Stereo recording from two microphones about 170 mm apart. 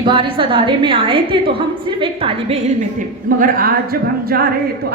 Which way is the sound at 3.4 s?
60° right (ahead or behind).